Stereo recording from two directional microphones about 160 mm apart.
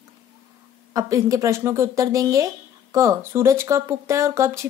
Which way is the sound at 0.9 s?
20° right (ahead or behind).